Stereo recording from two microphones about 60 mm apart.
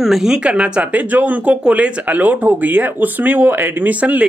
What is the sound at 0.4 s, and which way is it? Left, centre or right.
Speech, centre.